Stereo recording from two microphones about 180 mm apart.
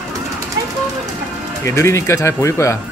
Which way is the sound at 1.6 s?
15° left (ahead or behind).